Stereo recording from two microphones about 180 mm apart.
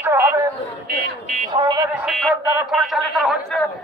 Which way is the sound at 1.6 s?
25° right (ahead or behind).